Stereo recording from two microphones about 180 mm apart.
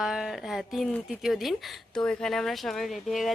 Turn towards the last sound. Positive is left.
turn(degrees=0)  # may be behind; listen again after turning